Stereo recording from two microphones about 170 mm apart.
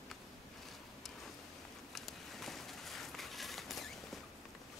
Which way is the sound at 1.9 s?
Centre (ahead or behind).